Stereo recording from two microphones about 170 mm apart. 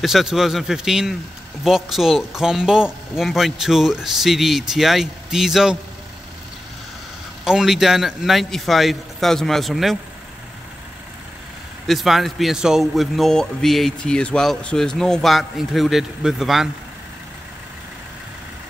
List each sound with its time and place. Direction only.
0.0 s a man's voice: centre (ahead or behind)
7.4 s a man's voice: 5° right (ahead or behind)
11.9 s a man's voice: centre (ahead or behind)